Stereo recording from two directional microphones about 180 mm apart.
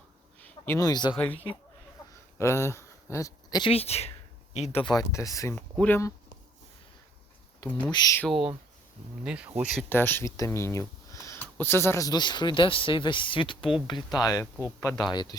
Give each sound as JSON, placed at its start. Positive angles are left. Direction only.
{"t": 0.3, "sound": "a sound", "side_deg": 10}
{"t": 1.1, "sound": "speech", "side_deg": 10}
{"t": 2.4, "sound": "speech", "side_deg": 15}
{"t": 7.9, "sound": "speech", "side_deg": 20}
{"t": 8.2, "sound": "speech", "side_deg": 0}
{"t": 9.9, "sound": "speech", "side_deg": 10}